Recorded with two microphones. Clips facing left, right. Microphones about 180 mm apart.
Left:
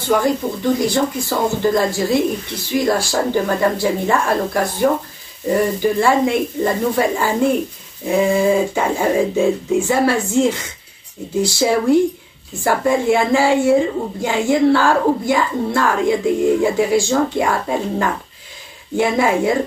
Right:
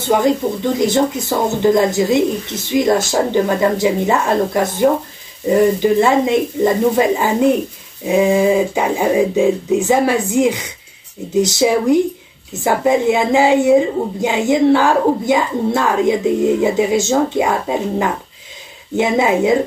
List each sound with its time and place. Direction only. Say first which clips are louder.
0.7 s speech: right 3 dB; 20° right (ahead or behind)